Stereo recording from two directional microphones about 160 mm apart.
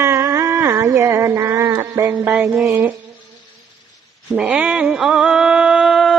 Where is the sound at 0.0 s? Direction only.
20° right (ahead or behind).